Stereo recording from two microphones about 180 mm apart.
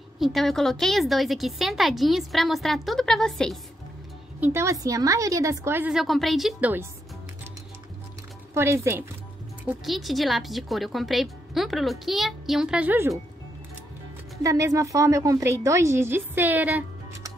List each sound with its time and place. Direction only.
0.2 s speech: centre (ahead or behind)
4.4 s a woman's voice: 15° right (ahead or behind)
8.5 s a woman's voice: 15° right (ahead or behind)
9.7 s speech: centre (ahead or behind)
14.4 s a woman's voice: 20° right (ahead or behind)